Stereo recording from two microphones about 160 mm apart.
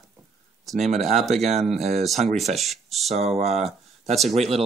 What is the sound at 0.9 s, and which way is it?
Speech, 45° right (ahead or behind).